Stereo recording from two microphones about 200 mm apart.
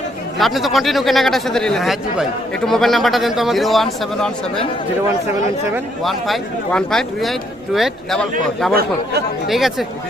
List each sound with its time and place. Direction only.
0.3 s a man's voice: centre (ahead or behind)
6.0 s a man's voice: centre (ahead or behind)
8.7 s speech: 50° right (ahead or behind)
9.5 s a man's voice: centre (ahead or behind)